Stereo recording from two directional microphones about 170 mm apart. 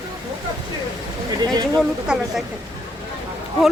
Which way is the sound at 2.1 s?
5° right (ahead or behind).